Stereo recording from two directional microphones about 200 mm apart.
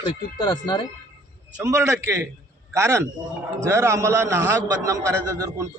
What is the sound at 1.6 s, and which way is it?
A man's voice, 15° right (ahead or behind).